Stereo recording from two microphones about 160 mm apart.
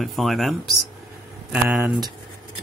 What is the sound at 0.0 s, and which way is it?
Speech, centre (ahead or behind).